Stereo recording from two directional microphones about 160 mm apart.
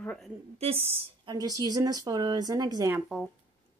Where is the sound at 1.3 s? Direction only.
25° right (ahead or behind).